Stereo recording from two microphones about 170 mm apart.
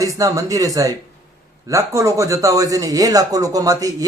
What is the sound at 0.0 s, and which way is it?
Speech, 20° right (ahead or behind).